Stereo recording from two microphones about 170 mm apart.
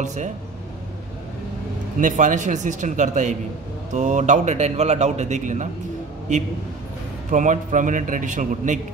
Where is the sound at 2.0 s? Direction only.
50° right (ahead or behind).